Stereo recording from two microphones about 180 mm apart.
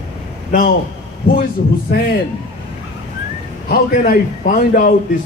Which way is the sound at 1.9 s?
55° left (ahead or behind).